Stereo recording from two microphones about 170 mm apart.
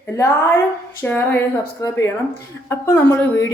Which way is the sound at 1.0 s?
10° left (ahead or behind).